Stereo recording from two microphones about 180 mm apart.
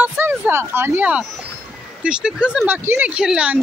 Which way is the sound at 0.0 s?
15° right (ahead or behind).